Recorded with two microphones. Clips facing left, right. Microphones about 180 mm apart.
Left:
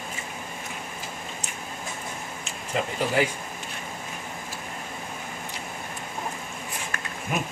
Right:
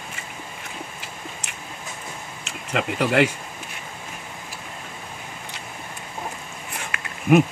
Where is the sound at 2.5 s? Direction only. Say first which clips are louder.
Right 3 dB; 70° right (ahead or behind).